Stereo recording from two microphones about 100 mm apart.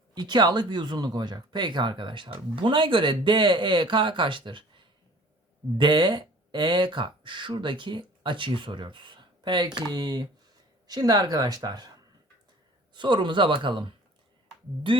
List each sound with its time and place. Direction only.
0.1 s speech: 45° right (ahead or behind)